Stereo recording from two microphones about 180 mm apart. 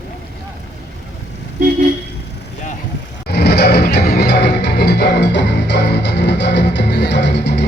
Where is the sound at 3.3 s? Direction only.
65° left (ahead or behind).